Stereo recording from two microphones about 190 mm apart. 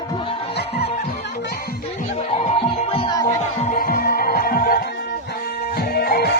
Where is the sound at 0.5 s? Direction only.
60° left (ahead or behind).